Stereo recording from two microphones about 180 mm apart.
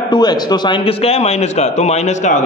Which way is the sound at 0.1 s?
25° left (ahead or behind).